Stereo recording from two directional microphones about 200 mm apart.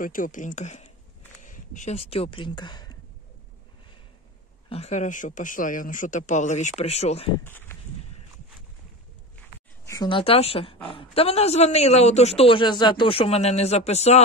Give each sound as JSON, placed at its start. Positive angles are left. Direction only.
{"t": 0.0, "sound": "speech", "side_deg": 45}
{"t": 4.6, "sound": "speech", "side_deg": 30}
{"t": 7.4, "sound": "speech", "side_deg": 10}
{"t": 9.8, "sound": "a woman's voice", "side_deg": 20}